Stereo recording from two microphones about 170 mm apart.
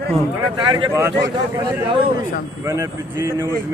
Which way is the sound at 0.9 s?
15° right (ahead or behind).